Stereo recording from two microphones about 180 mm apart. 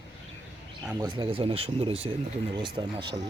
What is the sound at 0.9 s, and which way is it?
Speech, 20° right (ahead or behind).